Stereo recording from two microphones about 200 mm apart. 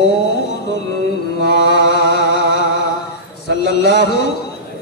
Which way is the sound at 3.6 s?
55° left (ahead or behind).